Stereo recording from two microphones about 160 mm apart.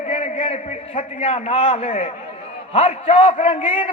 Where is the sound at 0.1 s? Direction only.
35° left (ahead or behind).